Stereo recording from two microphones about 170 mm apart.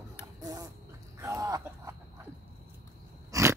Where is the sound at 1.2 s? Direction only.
20° right (ahead or behind).